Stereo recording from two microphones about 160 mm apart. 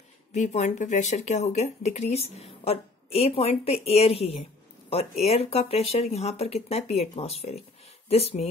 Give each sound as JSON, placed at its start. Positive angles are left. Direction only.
{"t": 0.3, "sound": "speech", "side_deg": 45}